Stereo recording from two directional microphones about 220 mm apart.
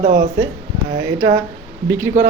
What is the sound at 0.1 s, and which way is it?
Speech, 15° right (ahead or behind).